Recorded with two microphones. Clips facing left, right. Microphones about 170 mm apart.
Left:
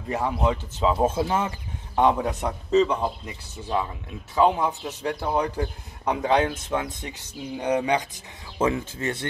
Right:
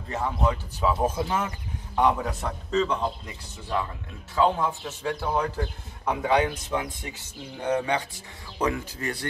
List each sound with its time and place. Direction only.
0.1 s a man's voice: 15° left (ahead or behind)
4.4 s a man's voice: 15° left (ahead or behind)